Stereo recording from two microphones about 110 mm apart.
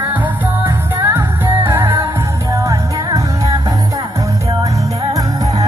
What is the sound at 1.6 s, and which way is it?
Music, 20° right (ahead or behind).